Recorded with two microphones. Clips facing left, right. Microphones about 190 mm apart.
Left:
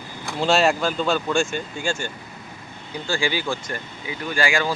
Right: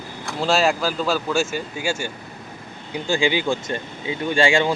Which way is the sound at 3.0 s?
20° right (ahead or behind).